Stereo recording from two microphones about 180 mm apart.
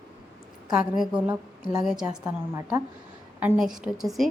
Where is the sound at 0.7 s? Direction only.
5° right (ahead or behind).